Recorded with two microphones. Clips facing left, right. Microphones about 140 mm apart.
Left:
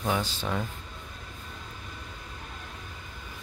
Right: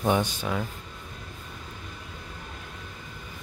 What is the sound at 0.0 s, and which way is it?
Speech, 20° right (ahead or behind).